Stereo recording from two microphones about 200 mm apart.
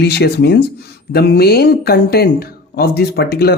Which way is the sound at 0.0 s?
55° left (ahead or behind).